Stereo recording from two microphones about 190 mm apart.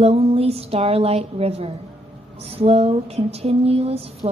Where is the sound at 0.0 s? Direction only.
30° right (ahead or behind).